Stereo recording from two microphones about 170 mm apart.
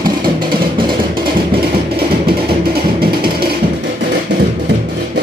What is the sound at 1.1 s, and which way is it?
Music, 60° right (ahead or behind).